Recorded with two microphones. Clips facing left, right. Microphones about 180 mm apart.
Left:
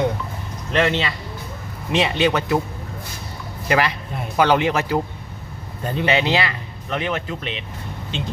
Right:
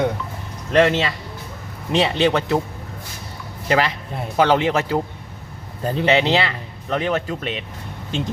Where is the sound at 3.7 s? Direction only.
25° right (ahead or behind).